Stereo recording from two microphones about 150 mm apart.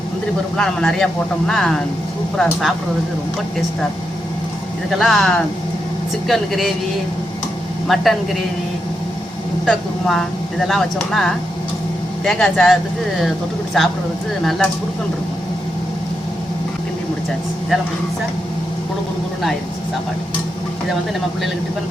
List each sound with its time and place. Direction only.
0.5 s speech: 5° left (ahead or behind)
4.9 s speech: centre (ahead or behind)
7.9 s speech: centre (ahead or behind)
9.6 s speech: centre (ahead or behind)